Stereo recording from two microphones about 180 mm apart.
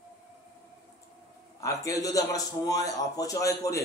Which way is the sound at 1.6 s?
20° left (ahead or behind).